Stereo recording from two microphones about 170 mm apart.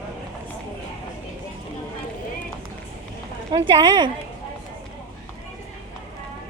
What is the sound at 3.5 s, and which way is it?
Speech, 30° right (ahead or behind).